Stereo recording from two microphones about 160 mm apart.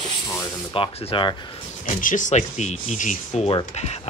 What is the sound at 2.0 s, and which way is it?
Speech, 55° left (ahead or behind).